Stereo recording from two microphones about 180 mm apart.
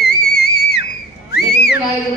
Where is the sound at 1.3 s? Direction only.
65° left (ahead or behind).